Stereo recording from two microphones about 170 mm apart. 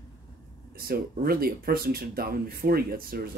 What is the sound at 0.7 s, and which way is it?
Speech, 60° right (ahead or behind).